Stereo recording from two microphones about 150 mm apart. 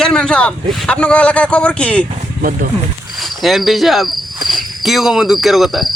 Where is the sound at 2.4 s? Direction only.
70° right (ahead or behind).